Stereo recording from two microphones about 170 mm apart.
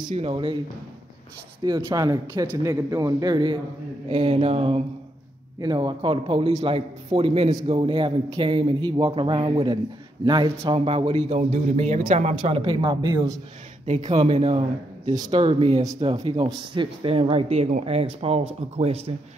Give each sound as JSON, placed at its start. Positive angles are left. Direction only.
{"t": 0.1, "sound": "speech", "side_deg": -35}
{"t": 1.6, "sound": "speech", "side_deg": -20}
{"t": 13.8, "sound": "speech", "side_deg": -45}
{"t": 15.1, "sound": "speech", "side_deg": -25}